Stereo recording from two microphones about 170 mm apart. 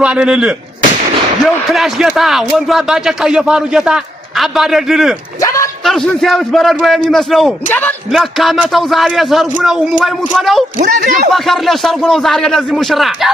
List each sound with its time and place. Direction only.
0.0 s speech: 5° right (ahead or behind); by 7.9 s 10° left (ahead or behind)
8.1 s speech: centre (ahead or behind)
10.8 s speech: 50° right (ahead or behind)
11.3 s speech: centre (ahead or behind)